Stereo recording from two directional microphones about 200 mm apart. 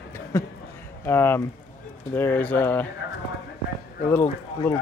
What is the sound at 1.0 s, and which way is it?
Speech, 10° left (ahead or behind).